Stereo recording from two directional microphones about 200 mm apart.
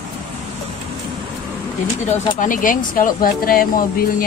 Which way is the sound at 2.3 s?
40° left (ahead or behind).